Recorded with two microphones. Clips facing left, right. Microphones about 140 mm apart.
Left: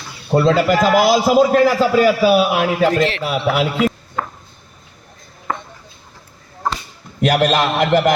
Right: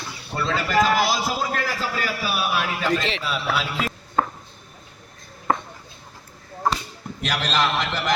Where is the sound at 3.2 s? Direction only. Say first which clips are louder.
Left 8 dB; 60° left (ahead or behind).